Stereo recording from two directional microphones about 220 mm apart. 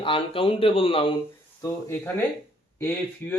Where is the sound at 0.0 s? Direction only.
25° left (ahead or behind).